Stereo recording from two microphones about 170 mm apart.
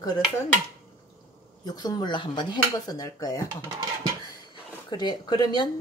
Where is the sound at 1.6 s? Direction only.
25° left (ahead or behind).